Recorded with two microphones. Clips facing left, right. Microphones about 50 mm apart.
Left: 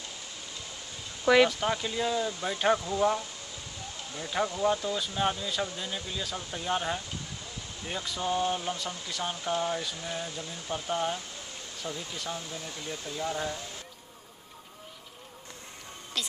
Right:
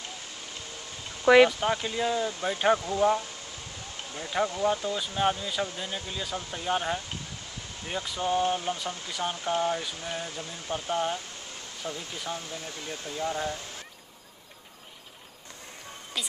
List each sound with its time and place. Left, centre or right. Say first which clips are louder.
1.2 s speech: right 4 dB; centre
12.8 s speech: left 1 dB; right
13.2 s speech: right 2 dB; centre
16.1 s a woman's voice: even; centre